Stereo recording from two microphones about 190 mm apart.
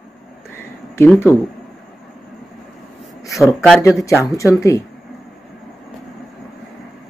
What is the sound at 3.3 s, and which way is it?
Speech, centre (ahead or behind).